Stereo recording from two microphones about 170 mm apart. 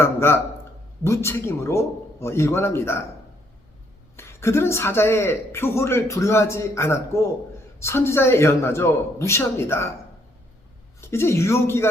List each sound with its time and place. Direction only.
0.0 s speech: 15° left (ahead or behind)
4.2 s speech: 15° left (ahead or behind)
11.1 s speech: 15° left (ahead or behind)